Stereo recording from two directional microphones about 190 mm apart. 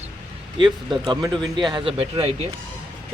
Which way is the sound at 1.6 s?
25° right (ahead or behind).